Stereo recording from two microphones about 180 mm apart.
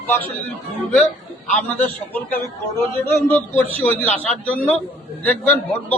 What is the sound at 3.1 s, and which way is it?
A man's voice, 15° left (ahead or behind).